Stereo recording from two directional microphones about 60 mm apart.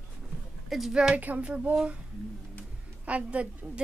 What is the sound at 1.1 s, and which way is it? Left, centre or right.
Speech, right.